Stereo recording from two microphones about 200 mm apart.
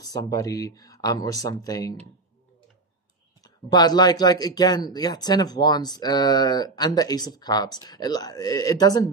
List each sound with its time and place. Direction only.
0.0 s speech: 20° left (ahead or behind)
3.4 s speech: 20° left (ahead or behind)